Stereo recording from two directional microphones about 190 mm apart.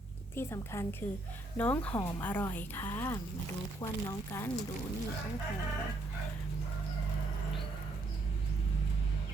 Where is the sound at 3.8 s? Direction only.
25° left (ahead or behind).